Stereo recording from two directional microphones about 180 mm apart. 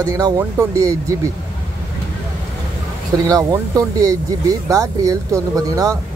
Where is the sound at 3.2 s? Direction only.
20° right (ahead or behind).